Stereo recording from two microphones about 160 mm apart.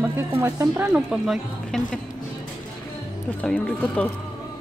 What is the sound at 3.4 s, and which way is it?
Speech, 10° left (ahead or behind).